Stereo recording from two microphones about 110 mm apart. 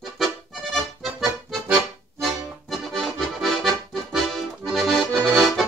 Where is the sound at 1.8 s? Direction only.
5° right (ahead or behind).